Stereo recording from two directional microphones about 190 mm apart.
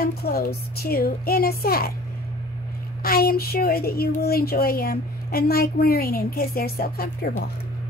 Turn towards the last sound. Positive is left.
turn(degrees=50)  # may be behind; listen again after turning